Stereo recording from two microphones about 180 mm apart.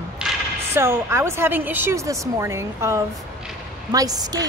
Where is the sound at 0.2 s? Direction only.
5° right (ahead or behind).